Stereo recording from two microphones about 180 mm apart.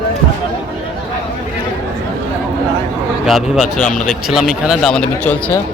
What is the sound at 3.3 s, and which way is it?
Speech, centre (ahead or behind).